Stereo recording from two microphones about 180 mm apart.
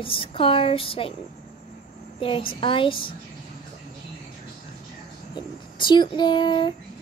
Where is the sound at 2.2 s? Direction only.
30° left (ahead or behind).